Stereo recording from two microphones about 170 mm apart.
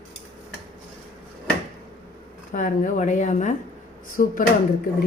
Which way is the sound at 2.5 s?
50° left (ahead or behind).